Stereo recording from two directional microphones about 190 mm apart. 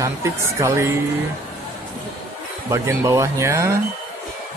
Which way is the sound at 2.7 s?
15° right (ahead or behind).